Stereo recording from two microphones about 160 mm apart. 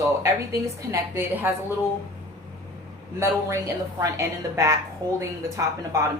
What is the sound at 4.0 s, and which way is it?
A woman's voice, 20° right (ahead or behind).